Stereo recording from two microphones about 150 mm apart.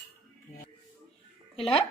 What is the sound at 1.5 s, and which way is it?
Speech, 40° left (ahead or behind).